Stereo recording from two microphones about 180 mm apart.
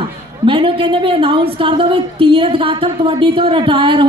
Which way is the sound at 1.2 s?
30° right (ahead or behind).